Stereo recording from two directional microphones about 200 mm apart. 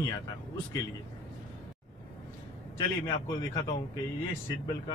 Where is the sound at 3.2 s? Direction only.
20° left (ahead or behind).